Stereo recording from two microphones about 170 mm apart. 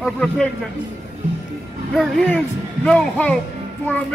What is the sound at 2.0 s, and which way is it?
Speech, centre (ahead or behind).